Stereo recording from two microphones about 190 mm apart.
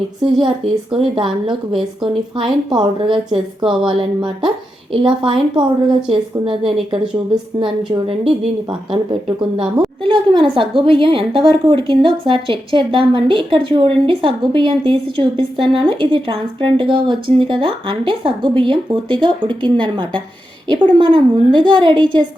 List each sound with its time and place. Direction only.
0.2 s a woman's voice: 25° right (ahead or behind)